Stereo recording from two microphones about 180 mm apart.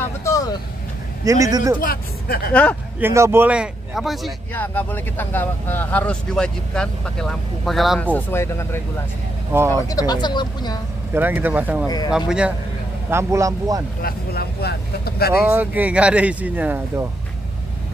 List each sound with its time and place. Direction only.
0.0 s vehicle: 15° left (ahead or behind)
1.2 s a man's voice: 20° right (ahead or behind)
1.8 s speech: 55° left (ahead or behind)
3.0 s speech: 15° right (ahead or behind)
4.6 s speech: 10° left (ahead or behind)
11.1 s speech: 10° right (ahead or behind)
13.1 s speech: 15° right (ahead or behind)
14.0 s speech: 60° left (ahead or behind)
15.3 s speech: 10° right (ahead or behind)